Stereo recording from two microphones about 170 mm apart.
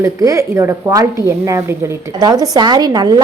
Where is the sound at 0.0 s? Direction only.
20° right (ahead or behind).